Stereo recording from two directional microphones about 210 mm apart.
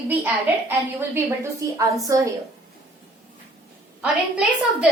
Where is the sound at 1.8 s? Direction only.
15° right (ahead or behind).